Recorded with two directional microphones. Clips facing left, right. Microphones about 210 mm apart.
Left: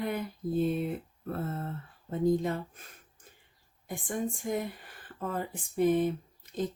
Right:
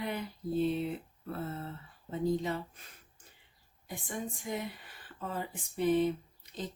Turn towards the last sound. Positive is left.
turn(degrees=50)  # may be behind; listen again after turning